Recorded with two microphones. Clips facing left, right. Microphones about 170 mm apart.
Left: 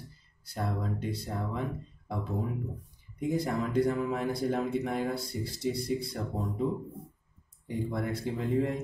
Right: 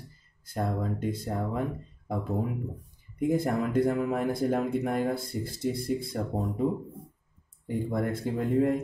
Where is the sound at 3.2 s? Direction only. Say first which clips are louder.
Right 4 dB; 50° right (ahead or behind).